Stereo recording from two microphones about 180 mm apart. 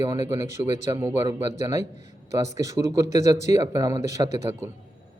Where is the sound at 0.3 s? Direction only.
15° right (ahead or behind).